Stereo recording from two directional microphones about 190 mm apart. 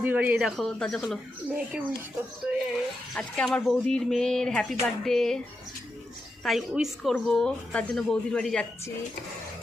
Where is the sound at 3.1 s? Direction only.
5° left (ahead or behind).